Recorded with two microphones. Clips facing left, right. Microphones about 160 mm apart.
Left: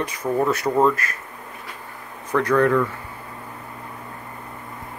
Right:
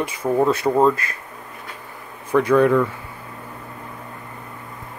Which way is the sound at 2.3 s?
10° right (ahead or behind).